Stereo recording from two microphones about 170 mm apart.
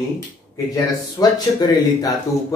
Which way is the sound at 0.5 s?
20° left (ahead or behind).